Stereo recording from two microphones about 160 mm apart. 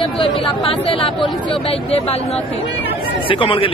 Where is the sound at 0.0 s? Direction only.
35° left (ahead or behind).